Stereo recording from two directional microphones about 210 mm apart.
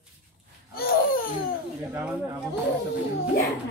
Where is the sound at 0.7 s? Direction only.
45° left (ahead or behind).